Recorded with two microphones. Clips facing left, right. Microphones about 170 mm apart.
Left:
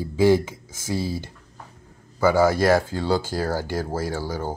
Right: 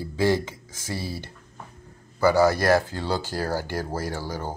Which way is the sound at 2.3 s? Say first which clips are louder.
Left 1 dB; 15° left (ahead or behind).